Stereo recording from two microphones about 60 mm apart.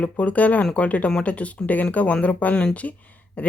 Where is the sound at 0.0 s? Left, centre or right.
Left.